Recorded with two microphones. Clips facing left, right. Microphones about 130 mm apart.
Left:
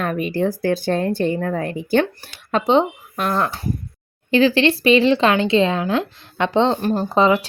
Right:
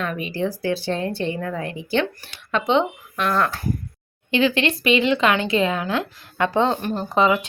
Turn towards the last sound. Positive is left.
turn(degrees=30)  # may be behind; listen again after turning